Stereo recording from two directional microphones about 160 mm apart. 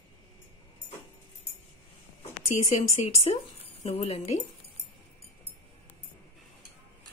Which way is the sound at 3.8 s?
40° left (ahead or behind).